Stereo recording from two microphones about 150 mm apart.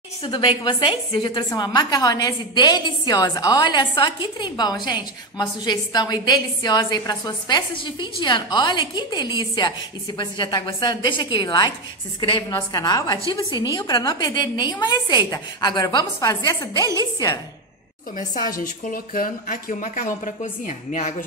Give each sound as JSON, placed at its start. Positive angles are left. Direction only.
{"t": 0.2, "sound": "a woman's voice", "side_deg": 30}
{"t": 18.6, "sound": "speech", "side_deg": 65}